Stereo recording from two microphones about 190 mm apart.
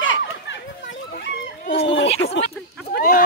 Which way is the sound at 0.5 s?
65° left (ahead or behind).